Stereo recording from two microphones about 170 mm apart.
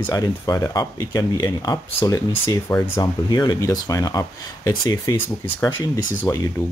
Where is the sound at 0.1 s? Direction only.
20° left (ahead or behind).